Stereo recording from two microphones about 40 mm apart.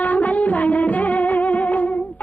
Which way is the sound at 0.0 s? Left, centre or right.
Left.